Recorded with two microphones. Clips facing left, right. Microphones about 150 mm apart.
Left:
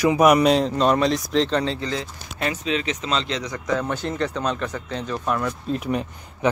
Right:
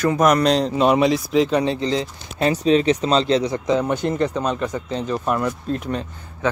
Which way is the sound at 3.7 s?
15° right (ahead or behind).